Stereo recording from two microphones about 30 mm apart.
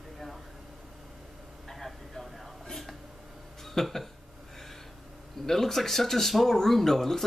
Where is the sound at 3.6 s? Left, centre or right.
Centre.